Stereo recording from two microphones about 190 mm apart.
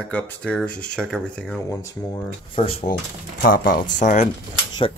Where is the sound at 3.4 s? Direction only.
45° left (ahead or behind).